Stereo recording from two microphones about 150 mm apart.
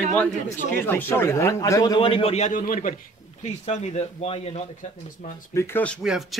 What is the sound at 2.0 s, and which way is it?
A man's voice, 35° left (ahead or behind).